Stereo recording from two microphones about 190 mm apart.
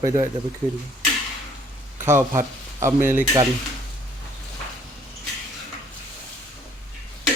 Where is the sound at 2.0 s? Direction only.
15° right (ahead or behind).